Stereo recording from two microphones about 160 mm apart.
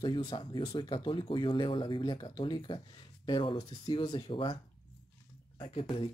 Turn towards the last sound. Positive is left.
turn(degrees=35)  # may be behind; listen again after turning